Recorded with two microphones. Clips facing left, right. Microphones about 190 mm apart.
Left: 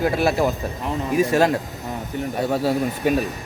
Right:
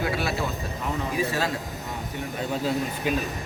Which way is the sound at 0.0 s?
45° left (ahead or behind).